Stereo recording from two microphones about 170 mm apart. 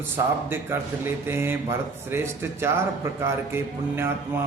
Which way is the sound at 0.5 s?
15° right (ahead or behind).